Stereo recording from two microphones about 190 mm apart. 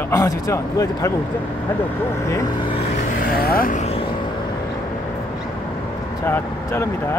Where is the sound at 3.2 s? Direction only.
50° left (ahead or behind).